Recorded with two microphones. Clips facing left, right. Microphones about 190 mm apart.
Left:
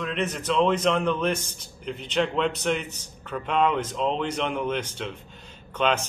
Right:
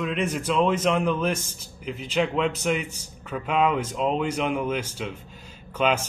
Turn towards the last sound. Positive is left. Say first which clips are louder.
# right 1 dB
turn(degrees=-5)  # may be behind; listen again after turning